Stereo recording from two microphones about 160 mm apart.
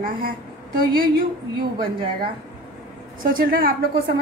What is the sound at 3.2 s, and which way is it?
Speech, 60° right (ahead or behind).